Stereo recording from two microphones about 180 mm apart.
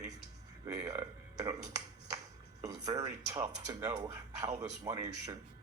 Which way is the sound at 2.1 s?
20° right (ahead or behind).